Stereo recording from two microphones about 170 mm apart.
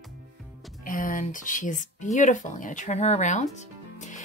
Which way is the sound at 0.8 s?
55° left (ahead or behind).